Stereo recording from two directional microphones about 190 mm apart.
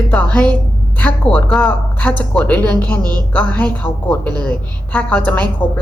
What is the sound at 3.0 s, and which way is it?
Speech, 20° right (ahead or behind).